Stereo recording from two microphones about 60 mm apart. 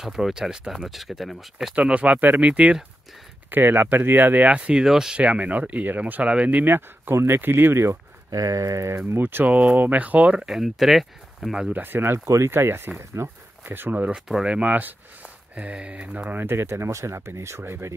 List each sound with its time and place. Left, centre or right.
0.0 s speech: centre
1.8 s speech: right
3.4 s speech: right
4.8 s speech: centre
5.2 s speech: right
8.3 s speech: right
9.5 s speech: right
10.4 s speech: centre
11.7 s speech: right
13.7 s speech: right
14.1 s speech: centre
14.5 s speech: right
16.3 s speech: right